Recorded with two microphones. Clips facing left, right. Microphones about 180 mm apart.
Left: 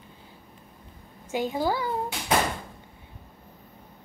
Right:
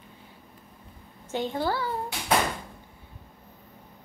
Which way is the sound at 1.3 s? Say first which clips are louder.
Left 2 dB; 10° left (ahead or behind).